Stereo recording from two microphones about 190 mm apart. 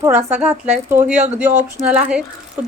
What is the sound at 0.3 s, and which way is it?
A woman's voice, 10° right (ahead or behind).